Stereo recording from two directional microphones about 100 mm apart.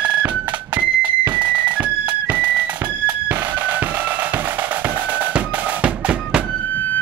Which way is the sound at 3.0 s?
15° right (ahead or behind).